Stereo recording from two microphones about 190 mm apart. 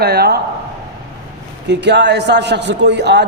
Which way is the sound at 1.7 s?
65° right (ahead or behind).